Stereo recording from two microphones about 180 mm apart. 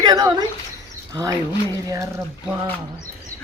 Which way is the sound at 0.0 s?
20° right (ahead or behind).